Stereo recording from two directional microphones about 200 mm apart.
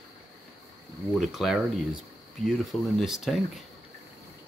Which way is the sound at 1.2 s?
Centre (ahead or behind).